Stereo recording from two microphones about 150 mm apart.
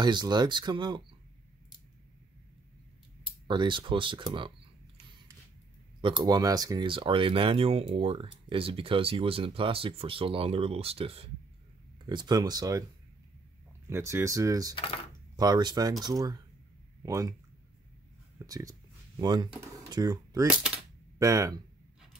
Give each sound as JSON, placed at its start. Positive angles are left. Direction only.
{"t": 0.0, "sound": "speech", "side_deg": -30}
{"t": 3.4, "sound": "speech", "side_deg": -30}
{"t": 5.9, "sound": "speech", "side_deg": -30}
{"t": 12.1, "sound": "speech", "side_deg": -30}
{"t": 13.8, "sound": "speech", "side_deg": -15}
{"t": 18.4, "sound": "speech", "side_deg": -20}
{"t": 20.4, "sound": "speech", "side_deg": -5}
{"t": 21.2, "sound": "speech", "side_deg": -20}